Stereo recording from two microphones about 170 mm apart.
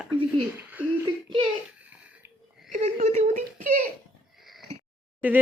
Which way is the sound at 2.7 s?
40° right (ahead or behind).